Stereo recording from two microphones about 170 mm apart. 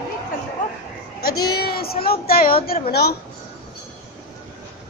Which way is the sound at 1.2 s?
65° left (ahead or behind).